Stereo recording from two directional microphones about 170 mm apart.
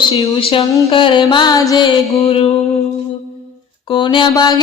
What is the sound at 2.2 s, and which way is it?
Speech, 35° left (ahead or behind).